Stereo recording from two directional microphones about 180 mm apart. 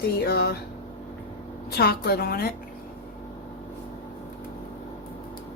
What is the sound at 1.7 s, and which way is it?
Speech, 60° left (ahead or behind).